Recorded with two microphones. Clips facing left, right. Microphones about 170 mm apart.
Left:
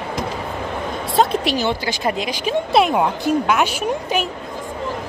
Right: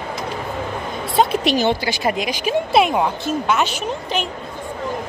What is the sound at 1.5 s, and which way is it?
Speech, 20° right (ahead or behind).